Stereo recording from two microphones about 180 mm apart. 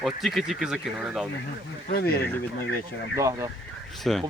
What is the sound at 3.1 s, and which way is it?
Speech, 15° right (ahead or behind).